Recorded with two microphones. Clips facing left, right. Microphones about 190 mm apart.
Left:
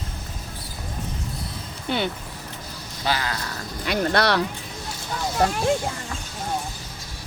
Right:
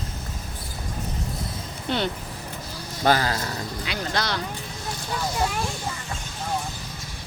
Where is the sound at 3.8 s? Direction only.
50° left (ahead or behind).